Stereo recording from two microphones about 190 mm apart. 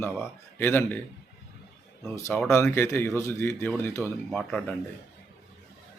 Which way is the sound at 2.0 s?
15° left (ahead or behind).